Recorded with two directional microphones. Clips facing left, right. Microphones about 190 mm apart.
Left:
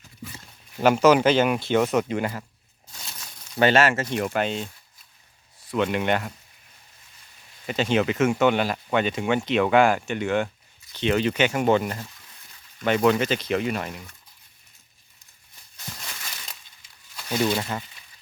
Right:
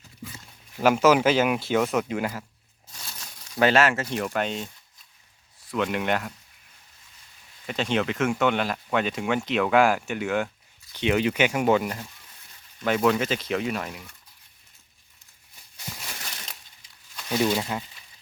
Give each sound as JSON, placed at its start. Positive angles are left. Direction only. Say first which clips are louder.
{"t": 0.8, "sound": "speech", "louder": "left 2 dB", "side_deg": 0}
{"t": 3.6, "sound": "speech", "louder": "left 1 dB", "side_deg": 0}
{"t": 7.7, "sound": "speech", "louder": "left 3 dB", "side_deg": 0}
{"t": 17.2, "sound": "speech", "louder": "even", "side_deg": 0}